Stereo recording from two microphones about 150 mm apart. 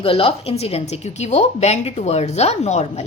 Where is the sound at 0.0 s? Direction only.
40° left (ahead or behind).